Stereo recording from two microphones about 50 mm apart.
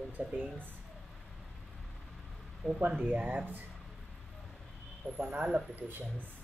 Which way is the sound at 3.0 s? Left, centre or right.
Right.